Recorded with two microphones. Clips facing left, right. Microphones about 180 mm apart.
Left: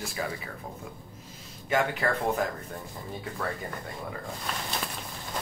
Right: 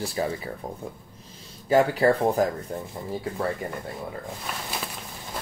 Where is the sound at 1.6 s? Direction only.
35° right (ahead or behind).